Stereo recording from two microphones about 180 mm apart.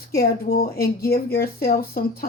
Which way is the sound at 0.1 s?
60° left (ahead or behind).